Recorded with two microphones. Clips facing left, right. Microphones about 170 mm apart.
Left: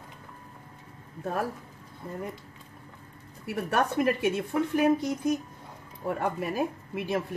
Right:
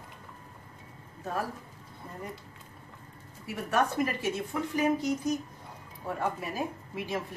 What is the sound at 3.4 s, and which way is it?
Speech, 60° left (ahead or behind).